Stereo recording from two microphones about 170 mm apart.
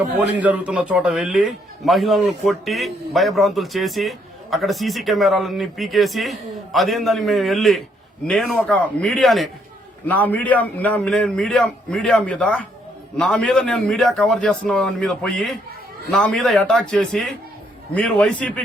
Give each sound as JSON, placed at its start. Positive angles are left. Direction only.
{"t": 0.3, "sound": "a man's voice", "side_deg": -5}